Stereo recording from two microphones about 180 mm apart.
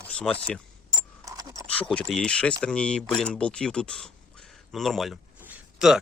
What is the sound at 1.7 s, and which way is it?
Speech, 5° left (ahead or behind).